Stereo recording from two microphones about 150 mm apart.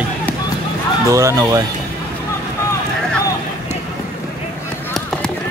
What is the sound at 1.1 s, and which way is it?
Speech, 20° right (ahead or behind).